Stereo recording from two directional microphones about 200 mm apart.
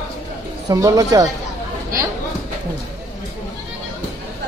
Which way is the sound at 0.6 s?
15° right (ahead or behind).